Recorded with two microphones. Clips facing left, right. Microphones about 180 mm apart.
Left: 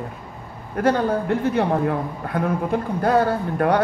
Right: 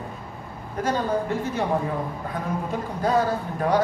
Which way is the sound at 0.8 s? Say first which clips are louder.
Left 5 dB; 60° left (ahead or behind).